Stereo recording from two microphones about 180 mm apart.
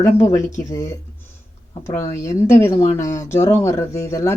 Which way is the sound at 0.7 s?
15° left (ahead or behind).